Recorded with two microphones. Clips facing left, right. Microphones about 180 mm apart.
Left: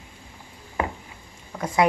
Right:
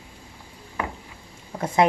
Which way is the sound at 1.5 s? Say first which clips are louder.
Right 1 dB; 25° right (ahead or behind).